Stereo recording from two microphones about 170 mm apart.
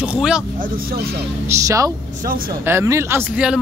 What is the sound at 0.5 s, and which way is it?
Speech, 55° right (ahead or behind).